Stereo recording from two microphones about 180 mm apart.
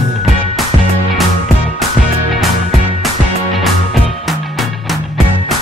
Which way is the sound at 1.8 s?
Centre (ahead or behind).